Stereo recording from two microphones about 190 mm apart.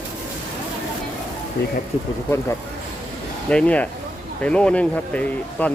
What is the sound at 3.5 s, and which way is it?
Speech, 5° left (ahead or behind).